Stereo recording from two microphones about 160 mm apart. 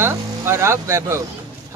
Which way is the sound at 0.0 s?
15° right (ahead or behind).